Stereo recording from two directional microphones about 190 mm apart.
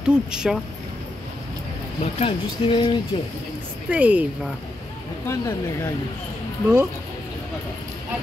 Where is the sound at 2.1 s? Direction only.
30° left (ahead or behind).